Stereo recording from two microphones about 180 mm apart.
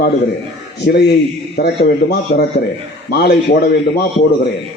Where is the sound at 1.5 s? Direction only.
60° left (ahead or behind).